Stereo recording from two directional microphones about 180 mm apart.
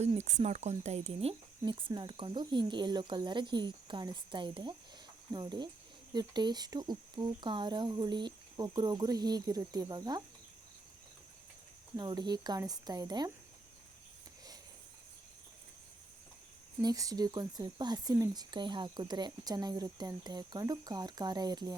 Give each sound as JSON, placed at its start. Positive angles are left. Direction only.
{"t": 0.0, "sound": "speech", "side_deg": -40}
{"t": 11.9, "sound": "speech", "side_deg": -20}
{"t": 16.8, "sound": "speech", "side_deg": -20}